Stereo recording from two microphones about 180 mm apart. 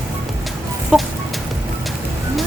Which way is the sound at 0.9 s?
5° right (ahead or behind).